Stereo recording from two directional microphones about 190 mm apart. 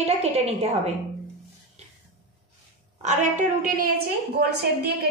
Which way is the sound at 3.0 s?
40° right (ahead or behind).